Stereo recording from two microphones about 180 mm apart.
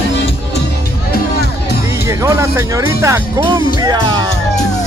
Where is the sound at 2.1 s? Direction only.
15° right (ahead or behind).